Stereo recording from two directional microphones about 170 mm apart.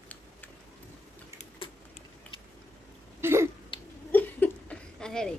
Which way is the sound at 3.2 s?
15° right (ahead or behind).